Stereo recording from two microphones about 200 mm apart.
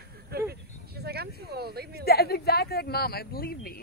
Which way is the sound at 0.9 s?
50° right (ahead or behind).